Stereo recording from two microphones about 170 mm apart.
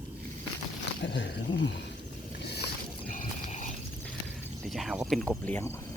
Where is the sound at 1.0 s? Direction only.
90° left.